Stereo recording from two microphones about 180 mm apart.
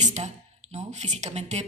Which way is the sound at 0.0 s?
40° right (ahead or behind).